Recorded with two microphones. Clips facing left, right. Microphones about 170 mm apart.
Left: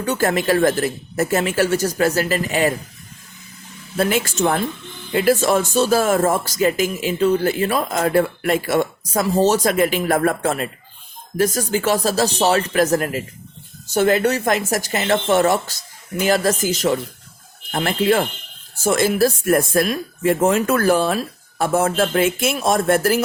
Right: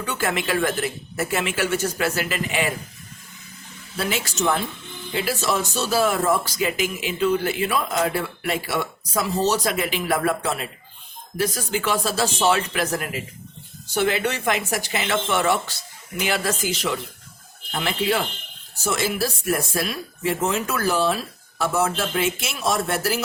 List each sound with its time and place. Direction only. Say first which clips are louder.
0.0 s speech: left 6 dB; 40° left (ahead or behind)
3.9 s speech: left 7 dB; 50° left (ahead or behind)